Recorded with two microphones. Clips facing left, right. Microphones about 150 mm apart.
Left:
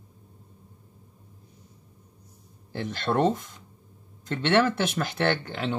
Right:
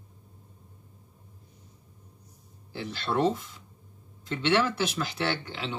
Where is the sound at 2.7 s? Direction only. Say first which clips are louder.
Left 3 dB; 50° left (ahead or behind).